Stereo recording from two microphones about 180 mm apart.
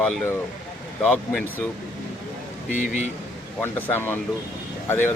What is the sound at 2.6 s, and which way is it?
Speech, 45° left (ahead or behind).